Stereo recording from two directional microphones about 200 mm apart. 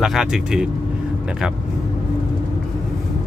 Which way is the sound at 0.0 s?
Centre (ahead or behind).